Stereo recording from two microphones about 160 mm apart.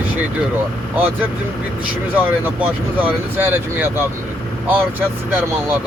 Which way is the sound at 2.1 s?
10° right (ahead or behind).